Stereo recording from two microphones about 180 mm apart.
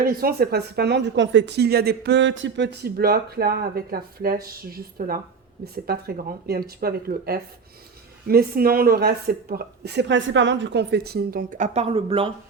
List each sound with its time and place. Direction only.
0.0 s a woman's voice: 55° right (ahead or behind); by 12.3 s 30° right (ahead or behind)